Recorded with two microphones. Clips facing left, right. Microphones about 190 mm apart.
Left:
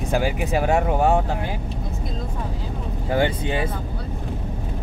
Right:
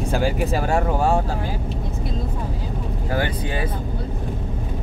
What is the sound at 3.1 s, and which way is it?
Speech, 25° left (ahead or behind).